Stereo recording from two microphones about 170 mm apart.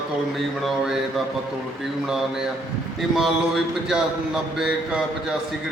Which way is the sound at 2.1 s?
5° right (ahead or behind).